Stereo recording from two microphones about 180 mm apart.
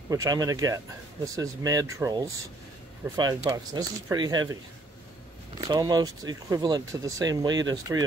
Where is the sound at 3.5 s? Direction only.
20° right (ahead or behind).